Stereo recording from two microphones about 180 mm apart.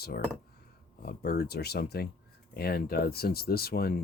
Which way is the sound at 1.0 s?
60° left (ahead or behind).